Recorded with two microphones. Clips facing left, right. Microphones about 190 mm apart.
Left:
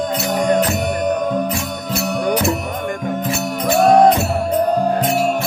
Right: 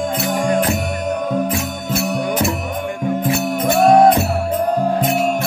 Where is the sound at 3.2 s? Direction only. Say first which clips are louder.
Right 3 dB; 55° right (ahead or behind).